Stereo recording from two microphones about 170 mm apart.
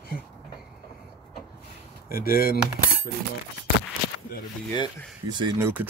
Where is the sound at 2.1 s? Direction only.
60° left (ahead or behind).